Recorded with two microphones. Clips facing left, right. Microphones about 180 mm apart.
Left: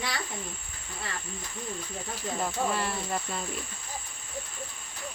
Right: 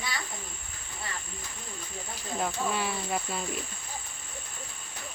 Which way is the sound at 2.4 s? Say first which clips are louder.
Even; centre (ahead or behind).